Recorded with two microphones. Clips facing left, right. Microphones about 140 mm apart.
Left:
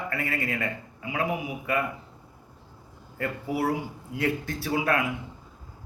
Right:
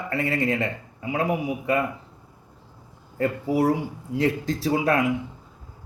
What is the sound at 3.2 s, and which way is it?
Speech, 30° right (ahead or behind).